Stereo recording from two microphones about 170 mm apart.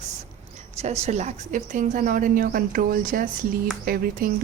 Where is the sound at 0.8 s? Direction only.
40° right (ahead or behind).